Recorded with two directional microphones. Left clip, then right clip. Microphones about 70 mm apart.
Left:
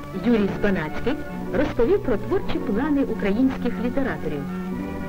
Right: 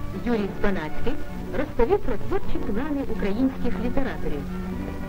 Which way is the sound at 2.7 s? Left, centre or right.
Left.